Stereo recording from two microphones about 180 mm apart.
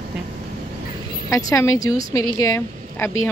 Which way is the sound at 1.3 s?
15° left (ahead or behind).